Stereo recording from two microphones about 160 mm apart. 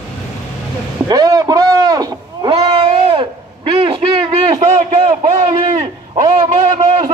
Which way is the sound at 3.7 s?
30° right (ahead or behind).